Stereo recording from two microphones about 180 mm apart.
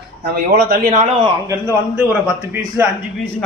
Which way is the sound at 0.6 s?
50° right (ahead or behind).